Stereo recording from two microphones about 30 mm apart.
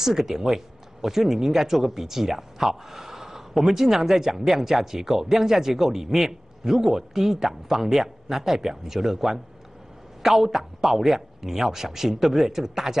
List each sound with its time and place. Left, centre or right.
0.0 s speech: centre